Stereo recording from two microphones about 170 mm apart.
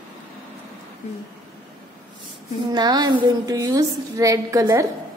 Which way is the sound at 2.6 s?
25° right (ahead or behind).